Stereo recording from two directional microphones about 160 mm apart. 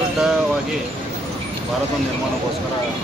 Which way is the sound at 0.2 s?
5° right (ahead or behind).